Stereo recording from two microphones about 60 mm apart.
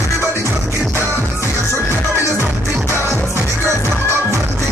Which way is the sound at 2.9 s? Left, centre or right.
Left.